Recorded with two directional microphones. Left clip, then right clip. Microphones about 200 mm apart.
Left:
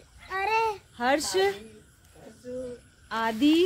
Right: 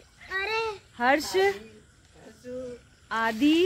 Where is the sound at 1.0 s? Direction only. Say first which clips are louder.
Right 2 dB; 30° right (ahead or behind).